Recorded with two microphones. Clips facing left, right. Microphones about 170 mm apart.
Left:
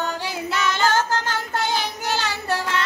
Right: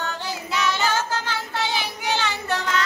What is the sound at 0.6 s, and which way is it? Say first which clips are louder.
Child singing: left 3 dB; 50° left (ahead or behind).